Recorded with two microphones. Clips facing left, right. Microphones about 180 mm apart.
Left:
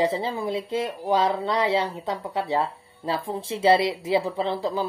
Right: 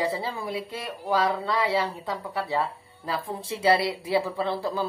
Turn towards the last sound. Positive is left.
turn(degrees=15)  # may be behind; listen again after turning